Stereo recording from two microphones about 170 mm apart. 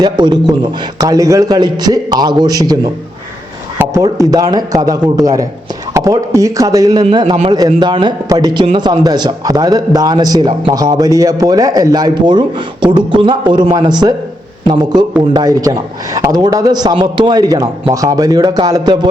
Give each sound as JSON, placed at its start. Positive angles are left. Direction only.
{"t": 0.0, "sound": "a man's voice", "side_deg": -25}
{"t": 3.8, "sound": "a man's voice", "side_deg": -20}